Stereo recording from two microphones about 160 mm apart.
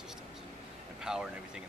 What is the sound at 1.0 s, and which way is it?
Speech, 5° right (ahead or behind).